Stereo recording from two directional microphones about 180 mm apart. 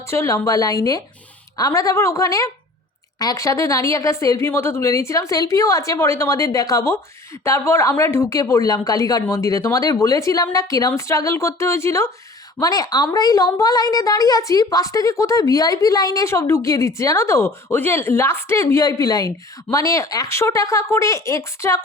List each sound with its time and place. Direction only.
0.1 s a woman's voice: 15° left (ahead or behind)